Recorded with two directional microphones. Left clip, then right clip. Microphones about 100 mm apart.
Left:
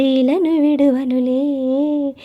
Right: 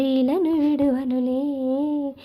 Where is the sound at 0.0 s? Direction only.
40° left (ahead or behind).